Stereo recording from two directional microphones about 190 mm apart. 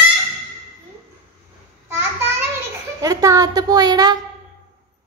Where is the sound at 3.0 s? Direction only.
15° right (ahead or behind).